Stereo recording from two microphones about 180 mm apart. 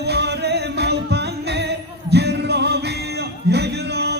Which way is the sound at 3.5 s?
65° right (ahead or behind).